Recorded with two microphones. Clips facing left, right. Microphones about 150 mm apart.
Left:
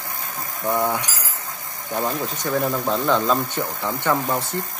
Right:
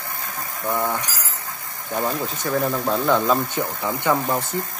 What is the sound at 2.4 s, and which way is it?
Speech, centre (ahead or behind).